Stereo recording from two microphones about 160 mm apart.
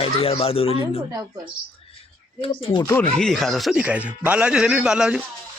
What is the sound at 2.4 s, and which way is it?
Speech, 35° left (ahead or behind).